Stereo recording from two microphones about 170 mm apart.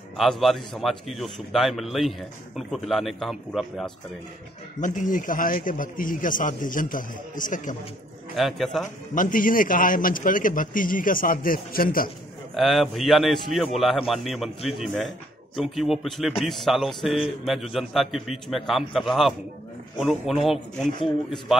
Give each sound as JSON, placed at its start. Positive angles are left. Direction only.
{"t": 0.2, "sound": "a man's voice", "side_deg": 0}
{"t": 4.7, "sound": "a man's voice", "side_deg": 50}
{"t": 8.4, "sound": "a man's voice", "side_deg": 0}
{"t": 9.1, "sound": "a man's voice", "side_deg": 50}
{"t": 12.5, "sound": "a man's voice", "side_deg": 0}